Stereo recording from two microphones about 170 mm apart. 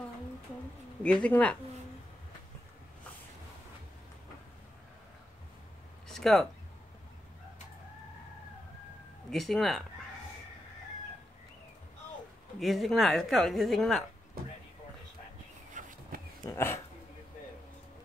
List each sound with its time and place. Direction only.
1.0 s speech: 5° left (ahead or behind)
6.0 s a sound: centre (ahead or behind)
9.3 s a woman's voice: centre (ahead or behind)
12.5 s a woman's voice: centre (ahead or behind)
15.8 s a sound: 50° right (ahead or behind)
16.1 s dog: 55° right (ahead or behind)
16.4 s speech: 15° left (ahead or behind)